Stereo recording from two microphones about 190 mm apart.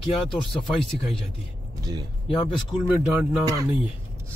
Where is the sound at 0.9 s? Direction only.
45° left (ahead or behind).